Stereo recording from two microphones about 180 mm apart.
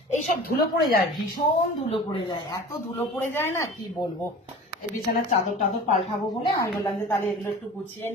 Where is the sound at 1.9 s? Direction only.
25° left (ahead or behind).